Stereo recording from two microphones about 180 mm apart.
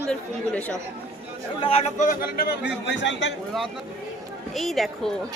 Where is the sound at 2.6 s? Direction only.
80° left.